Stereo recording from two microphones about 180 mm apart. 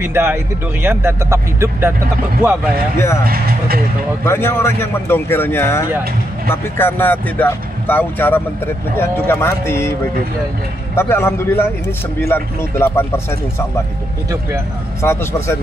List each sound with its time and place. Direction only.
0.0 s speech: 15° right (ahead or behind)
3.3 s speech: 55° right (ahead or behind)
4.2 s speech: 15° left (ahead or behind)
11.0 s speech: 15° left (ahead or behind)
15.0 s speech: 15° left (ahead or behind)